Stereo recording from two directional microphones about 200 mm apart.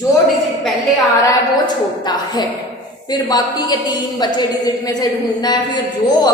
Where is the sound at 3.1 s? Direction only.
20° left (ahead or behind).